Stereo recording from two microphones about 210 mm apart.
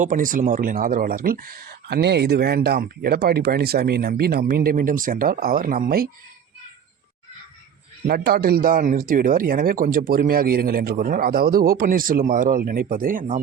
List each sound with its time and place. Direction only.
0.0 s speech: 40° right (ahead or behind)
8.0 s speech: 45° right (ahead or behind)